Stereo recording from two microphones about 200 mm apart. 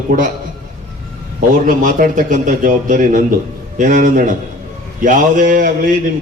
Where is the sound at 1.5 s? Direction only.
40° right (ahead or behind).